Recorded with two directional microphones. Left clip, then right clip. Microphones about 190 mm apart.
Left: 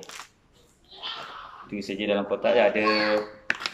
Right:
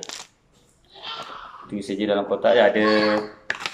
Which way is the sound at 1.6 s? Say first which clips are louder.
Right 4 dB; centre (ahead or behind).